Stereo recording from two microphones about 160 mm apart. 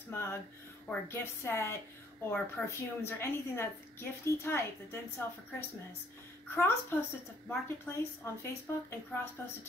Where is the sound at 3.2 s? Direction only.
15° left (ahead or behind).